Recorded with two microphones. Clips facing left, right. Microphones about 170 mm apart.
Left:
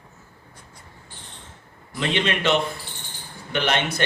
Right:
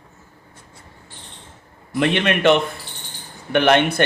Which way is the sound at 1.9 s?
60° right (ahead or behind).